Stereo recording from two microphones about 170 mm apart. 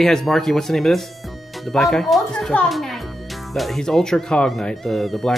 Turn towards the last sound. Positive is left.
turn(degrees=0)  # may be behind; listen again after turning